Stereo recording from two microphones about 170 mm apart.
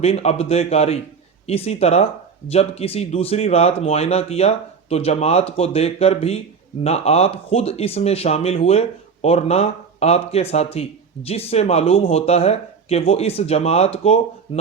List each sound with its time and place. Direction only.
0.0 s speech: 40° left (ahead or behind)